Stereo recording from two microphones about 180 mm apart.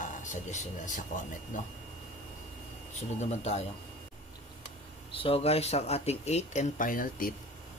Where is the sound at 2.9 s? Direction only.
35° left (ahead or behind).